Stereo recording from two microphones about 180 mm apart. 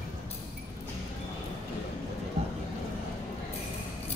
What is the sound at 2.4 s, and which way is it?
Vehicle, 35° right (ahead or behind).